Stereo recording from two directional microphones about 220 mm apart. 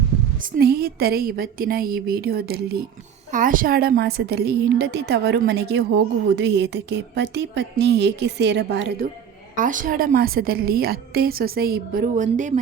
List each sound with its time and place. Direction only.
0.5 s a woman's voice: 45° right (ahead or behind)
9.6 s a woman's voice: 35° right (ahead or behind)